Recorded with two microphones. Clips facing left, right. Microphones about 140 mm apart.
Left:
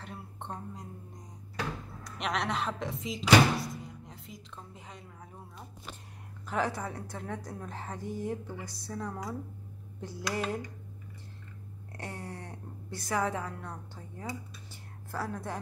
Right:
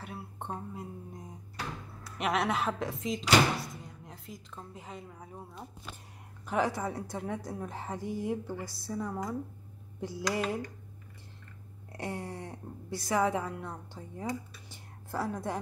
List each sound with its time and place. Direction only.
0.0 s a sound: 5° right (ahead or behind)
2.0 s speech: 5° right (ahead or behind)
6.4 s a woman's voice: 15° right (ahead or behind)
12.0 s a woman's voice: 15° right (ahead or behind)
14.7 s whispering: 15° right (ahead or behind)